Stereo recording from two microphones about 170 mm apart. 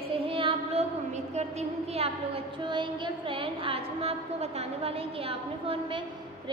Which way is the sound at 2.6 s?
25° right (ahead or behind).